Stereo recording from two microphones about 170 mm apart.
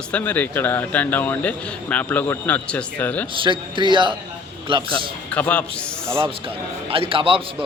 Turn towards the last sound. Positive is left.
turn(degrees=-30)  # may be behind; listen again after turning